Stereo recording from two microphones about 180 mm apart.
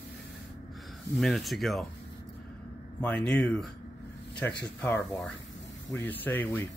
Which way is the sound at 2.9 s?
5° left (ahead or behind).